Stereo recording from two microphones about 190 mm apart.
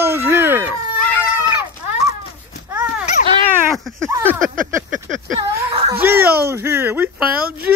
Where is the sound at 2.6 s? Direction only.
10° right (ahead or behind).